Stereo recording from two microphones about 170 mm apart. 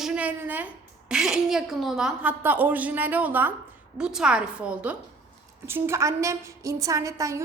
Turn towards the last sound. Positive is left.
turn(degrees=-20)  # may be behind; listen again after turning